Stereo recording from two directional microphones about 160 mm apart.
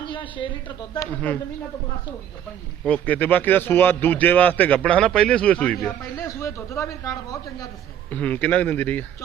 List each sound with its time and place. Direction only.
0.0 s a sound: 30° left (ahead or behind)
2.8 s a man's voice: 10° left (ahead or behind)
6.0 s speech: 20° left (ahead or behind)
8.1 s a man's voice: 10° left (ahead or behind)